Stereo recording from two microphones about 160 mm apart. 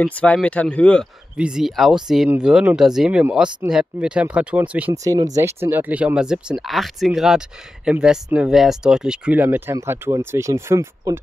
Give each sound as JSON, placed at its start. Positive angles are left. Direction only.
{"t": 0.0, "sound": "speech", "side_deg": 10}
{"t": 1.3, "sound": "speech", "side_deg": -5}
{"t": 5.0, "sound": "speech", "side_deg": -20}